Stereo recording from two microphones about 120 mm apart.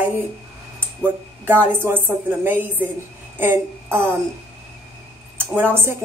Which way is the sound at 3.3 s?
20° right (ahead or behind).